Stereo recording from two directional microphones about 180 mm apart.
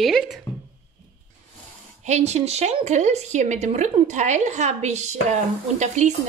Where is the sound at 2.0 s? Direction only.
40° right (ahead or behind).